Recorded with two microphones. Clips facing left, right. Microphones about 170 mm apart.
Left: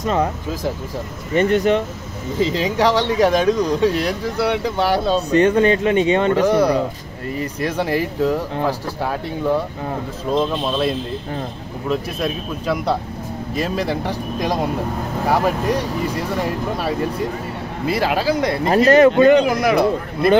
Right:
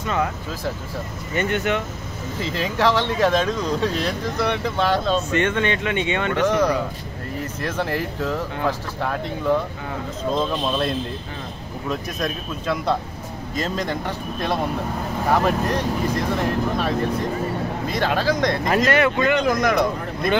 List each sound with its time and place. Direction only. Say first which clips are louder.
0.0 s speech: left 4 dB; 35° left (ahead or behind)
1.3 s speech: left 7 dB; 35° left (ahead or behind)
2.4 s speech: left 4 dB; 15° left (ahead or behind)
5.3 s speech: left 7 dB; 35° left (ahead or behind)
6.4 s speech: left 4 dB; 10° left (ahead or behind)
10.3 s speech: left 4 dB; 5° left (ahead or behind)
18.9 s speech: left 11 dB; 35° left (ahead or behind)
19.4 s speech: left 3 dB; 10° left (ahead or behind)